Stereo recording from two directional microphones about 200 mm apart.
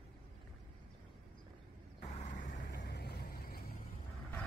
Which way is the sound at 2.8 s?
55° left (ahead or behind).